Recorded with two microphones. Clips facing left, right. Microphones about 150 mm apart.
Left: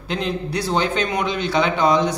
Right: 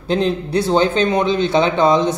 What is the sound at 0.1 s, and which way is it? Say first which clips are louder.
Speech: right 7 dB; 30° right (ahead or behind).